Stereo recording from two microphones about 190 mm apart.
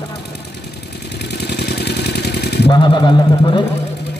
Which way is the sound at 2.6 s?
25° left (ahead or behind).